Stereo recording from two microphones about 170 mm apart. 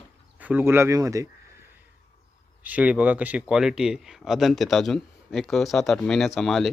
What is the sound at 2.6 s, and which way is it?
Speech, 10° right (ahead or behind).